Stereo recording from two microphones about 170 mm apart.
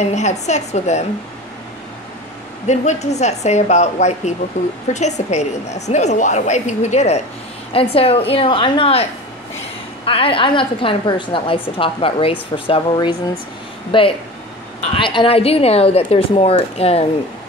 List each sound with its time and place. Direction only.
0.0 s a woman's voice: 40° left (ahead or behind)
2.6 s a woman's voice: 45° left (ahead or behind)
10.0 s a woman's voice: 30° left (ahead or behind)